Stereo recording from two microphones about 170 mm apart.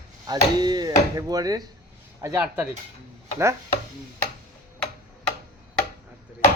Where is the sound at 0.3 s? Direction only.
25° right (ahead or behind).